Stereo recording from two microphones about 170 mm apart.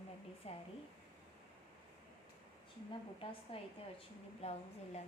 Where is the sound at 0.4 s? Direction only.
35° left (ahead or behind).